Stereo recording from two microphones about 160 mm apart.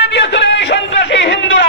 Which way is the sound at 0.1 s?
90° left.